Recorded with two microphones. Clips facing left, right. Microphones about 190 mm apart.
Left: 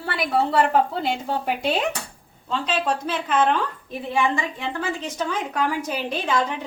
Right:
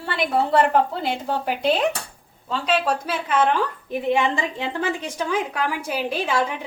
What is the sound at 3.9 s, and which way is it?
Speech, 20° right (ahead or behind).